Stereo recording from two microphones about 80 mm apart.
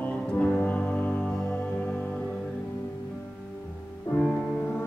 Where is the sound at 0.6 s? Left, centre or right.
Centre.